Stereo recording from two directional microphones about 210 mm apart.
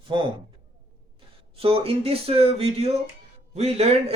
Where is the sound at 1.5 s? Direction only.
25° right (ahead or behind).